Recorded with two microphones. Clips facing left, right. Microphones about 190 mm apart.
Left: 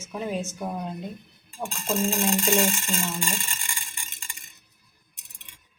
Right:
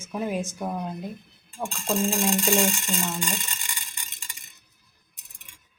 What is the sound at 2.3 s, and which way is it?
Speech, centre (ahead or behind).